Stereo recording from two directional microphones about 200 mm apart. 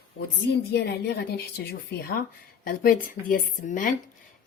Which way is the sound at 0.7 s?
55° left (ahead or behind).